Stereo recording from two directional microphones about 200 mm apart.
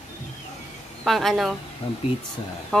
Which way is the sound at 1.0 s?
Centre (ahead or behind).